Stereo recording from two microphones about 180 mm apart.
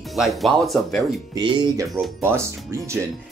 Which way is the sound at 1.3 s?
25° right (ahead or behind).